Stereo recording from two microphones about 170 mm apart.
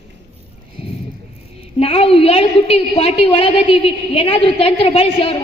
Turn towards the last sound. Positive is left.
turn(degrees=35)  # may be behind; listen again after turning